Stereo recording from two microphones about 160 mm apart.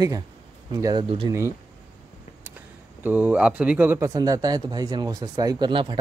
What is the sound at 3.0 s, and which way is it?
Speech, 10° right (ahead or behind).